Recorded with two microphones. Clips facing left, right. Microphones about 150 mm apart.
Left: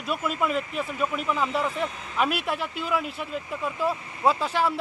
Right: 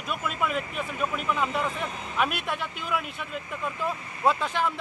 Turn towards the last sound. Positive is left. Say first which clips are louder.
# left 2 dB
turn(degrees=5)  # may be behind; listen again after turning